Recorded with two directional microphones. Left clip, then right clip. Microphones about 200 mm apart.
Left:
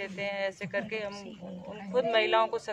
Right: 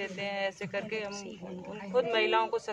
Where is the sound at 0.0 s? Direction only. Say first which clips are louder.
Left 1 dB; 5° left (ahead or behind).